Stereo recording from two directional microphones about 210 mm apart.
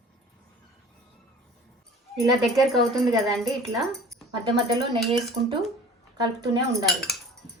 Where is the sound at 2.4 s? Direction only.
Centre (ahead or behind).